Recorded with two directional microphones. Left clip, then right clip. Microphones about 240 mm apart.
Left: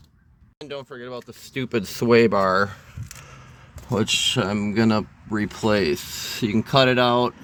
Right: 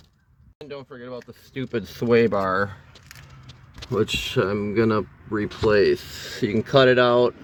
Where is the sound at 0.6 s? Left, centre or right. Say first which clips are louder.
Left 3 dB; left.